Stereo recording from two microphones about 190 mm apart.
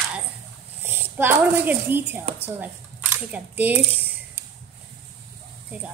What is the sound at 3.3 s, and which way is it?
Speech, 10° right (ahead or behind).